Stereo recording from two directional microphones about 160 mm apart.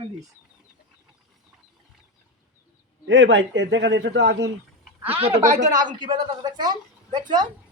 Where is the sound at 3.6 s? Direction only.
90° right.